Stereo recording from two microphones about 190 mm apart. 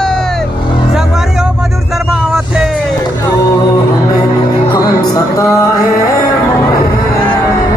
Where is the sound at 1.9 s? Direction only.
5° right (ahead or behind).